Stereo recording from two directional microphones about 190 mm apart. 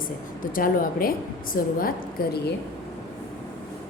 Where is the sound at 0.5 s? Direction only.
50° left (ahead or behind).